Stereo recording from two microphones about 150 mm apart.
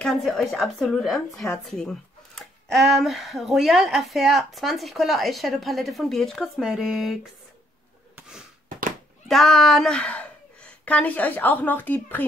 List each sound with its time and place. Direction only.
0.0 s a woman's voice: centre (ahead or behind)
8.6 s neigh: 65° right (ahead or behind)
9.3 s a woman's voice: centre (ahead or behind)